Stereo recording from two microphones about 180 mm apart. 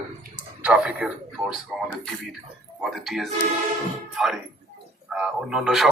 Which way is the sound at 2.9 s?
Centre (ahead or behind).